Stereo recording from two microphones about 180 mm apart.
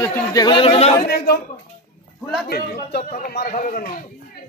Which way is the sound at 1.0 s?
60° left (ahead or behind).